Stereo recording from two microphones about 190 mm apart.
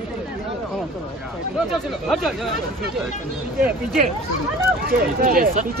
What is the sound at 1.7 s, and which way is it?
Speech, centre (ahead or behind).